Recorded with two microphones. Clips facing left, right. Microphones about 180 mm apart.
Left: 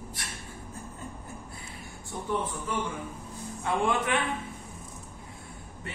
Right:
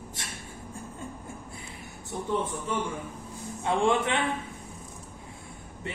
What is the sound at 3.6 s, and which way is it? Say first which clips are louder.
Speech: right 3 dB; 25° right (ahead or behind).